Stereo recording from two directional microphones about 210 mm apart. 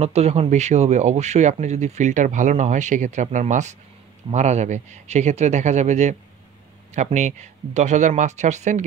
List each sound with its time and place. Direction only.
0.0 s speech: 30° right (ahead or behind)